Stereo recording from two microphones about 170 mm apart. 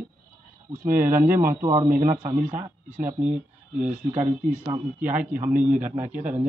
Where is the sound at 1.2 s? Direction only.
15° right (ahead or behind).